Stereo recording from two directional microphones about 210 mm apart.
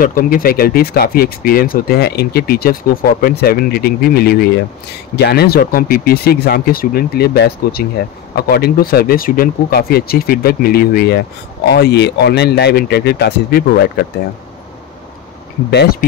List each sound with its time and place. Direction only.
0.0 s speech: 40° left (ahead or behind)
15.7 s speech: 50° left (ahead or behind)